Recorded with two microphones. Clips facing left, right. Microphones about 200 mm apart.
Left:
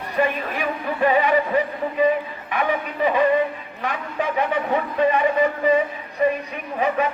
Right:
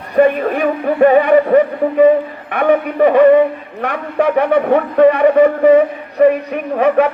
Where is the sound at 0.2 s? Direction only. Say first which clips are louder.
Right 11 dB; 55° right (ahead or behind).